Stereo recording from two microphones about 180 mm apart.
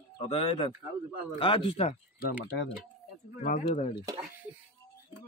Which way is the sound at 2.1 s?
60° left (ahead or behind).